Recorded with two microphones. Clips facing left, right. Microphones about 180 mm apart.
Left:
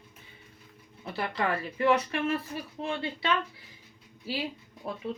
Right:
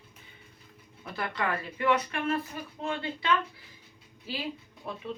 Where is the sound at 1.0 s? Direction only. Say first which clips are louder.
Left 2 dB; 30° left (ahead or behind).